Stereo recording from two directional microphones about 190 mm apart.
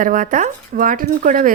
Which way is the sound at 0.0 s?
45° right (ahead or behind).